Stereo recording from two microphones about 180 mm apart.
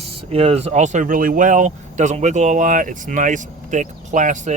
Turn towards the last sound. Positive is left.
turn(degrees=-45)  # may be behind; listen again after turning